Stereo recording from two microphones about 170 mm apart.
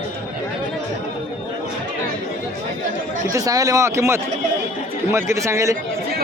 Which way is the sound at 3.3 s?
20° right (ahead or behind).